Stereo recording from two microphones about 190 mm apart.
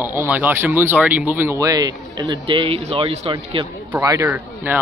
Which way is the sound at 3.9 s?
15° right (ahead or behind).